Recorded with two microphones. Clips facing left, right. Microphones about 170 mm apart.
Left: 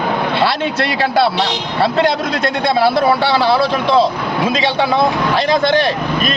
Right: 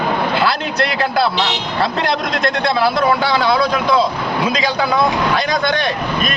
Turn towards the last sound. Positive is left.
turn(degrees=30)  # may be behind; listen again after turning